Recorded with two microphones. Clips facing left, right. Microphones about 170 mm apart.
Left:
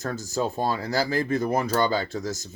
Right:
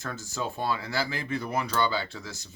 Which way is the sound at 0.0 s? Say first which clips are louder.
Left 6 dB; 40° left (ahead or behind).